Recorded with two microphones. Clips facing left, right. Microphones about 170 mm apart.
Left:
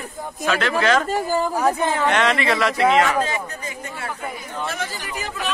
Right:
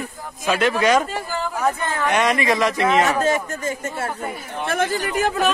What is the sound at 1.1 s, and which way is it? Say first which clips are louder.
Speech: left 6 dB; 40° left (ahead or behind).